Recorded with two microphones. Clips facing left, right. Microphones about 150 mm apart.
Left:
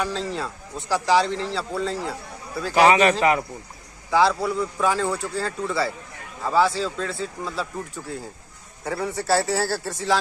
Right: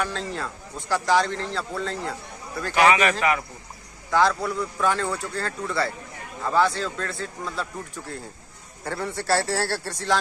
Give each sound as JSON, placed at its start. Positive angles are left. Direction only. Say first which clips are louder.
{"t": 0.0, "sound": "a man's voice", "louder": "left 2 dB", "side_deg": 0}
{"t": 2.7, "sound": "a man's voice", "louder": "left 3 dB", "side_deg": 35}
{"t": 4.1, "sound": "a man's voice", "louder": "left 2 dB", "side_deg": 5}
{"t": 8.8, "sound": "a man's voice", "louder": "left 2 dB", "side_deg": 0}